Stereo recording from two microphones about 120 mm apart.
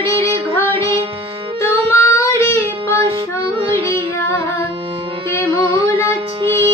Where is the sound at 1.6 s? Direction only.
20° left (ahead or behind).